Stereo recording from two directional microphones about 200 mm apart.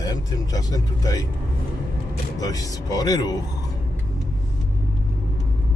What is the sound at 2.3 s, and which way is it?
Speech, 20° left (ahead or behind).